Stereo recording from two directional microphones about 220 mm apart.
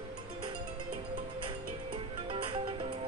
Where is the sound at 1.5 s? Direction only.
25° right (ahead or behind).